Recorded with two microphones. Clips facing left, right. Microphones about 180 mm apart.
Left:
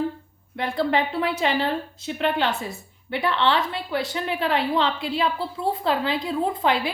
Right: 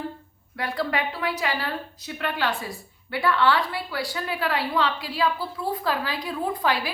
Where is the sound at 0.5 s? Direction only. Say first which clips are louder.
Left 4 dB; 25° left (ahead or behind).